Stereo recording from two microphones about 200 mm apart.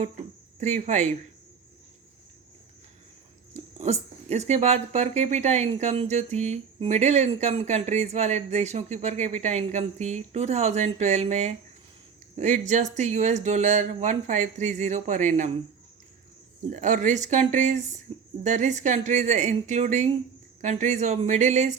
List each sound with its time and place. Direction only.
0.0 s speech: 35° right (ahead or behind)
3.8 s speech: 35° right (ahead or behind)
16.6 s speech: 40° right (ahead or behind)